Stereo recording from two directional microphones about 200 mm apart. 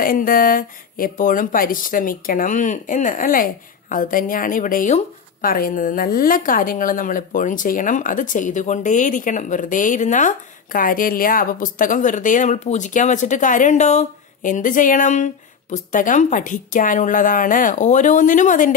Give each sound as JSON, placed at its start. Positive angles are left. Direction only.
{"t": 0.0, "sound": "speech", "side_deg": 45}